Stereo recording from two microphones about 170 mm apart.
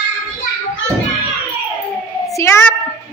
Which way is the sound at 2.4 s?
15° left (ahead or behind).